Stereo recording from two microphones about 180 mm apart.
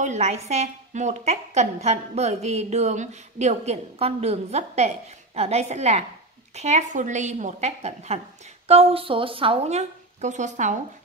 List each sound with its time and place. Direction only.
0.0 s a woman's voice: 40° right (ahead or behind)